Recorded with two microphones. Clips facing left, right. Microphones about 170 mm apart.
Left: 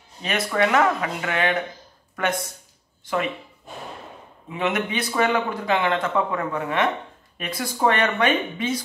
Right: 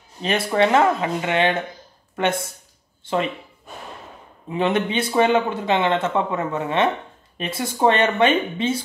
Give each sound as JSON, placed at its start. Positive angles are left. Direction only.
{"t": 0.2, "sound": "speech", "side_deg": -30}
{"t": 4.5, "sound": "speech", "side_deg": -30}